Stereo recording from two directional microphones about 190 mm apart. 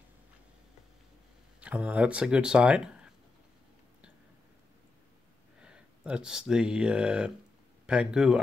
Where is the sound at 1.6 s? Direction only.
5° right (ahead or behind).